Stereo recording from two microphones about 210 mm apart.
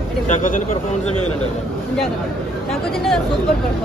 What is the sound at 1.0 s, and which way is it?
Speech, 90° left.